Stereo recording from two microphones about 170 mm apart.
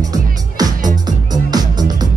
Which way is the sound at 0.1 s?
20° right (ahead or behind).